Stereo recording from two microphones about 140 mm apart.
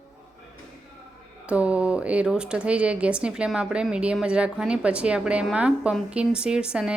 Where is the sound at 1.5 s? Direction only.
10° right (ahead or behind).